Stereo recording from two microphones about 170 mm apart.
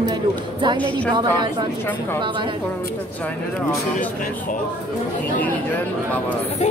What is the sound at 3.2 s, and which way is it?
Speech, 10° left (ahead or behind).